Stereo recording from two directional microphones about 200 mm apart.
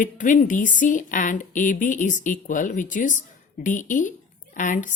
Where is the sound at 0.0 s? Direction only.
40° left (ahead or behind).